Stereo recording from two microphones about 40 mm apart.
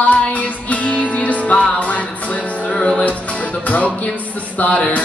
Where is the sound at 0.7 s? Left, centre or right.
Left.